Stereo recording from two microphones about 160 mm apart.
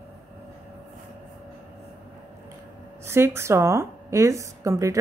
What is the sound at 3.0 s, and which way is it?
A woman's voice, 15° right (ahead or behind).